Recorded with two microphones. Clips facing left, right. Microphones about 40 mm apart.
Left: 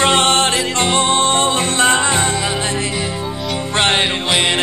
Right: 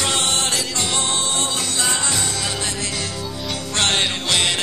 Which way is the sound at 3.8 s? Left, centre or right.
Left.